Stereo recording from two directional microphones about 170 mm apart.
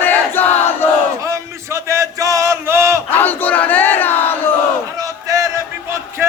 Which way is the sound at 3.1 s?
10° left (ahead or behind).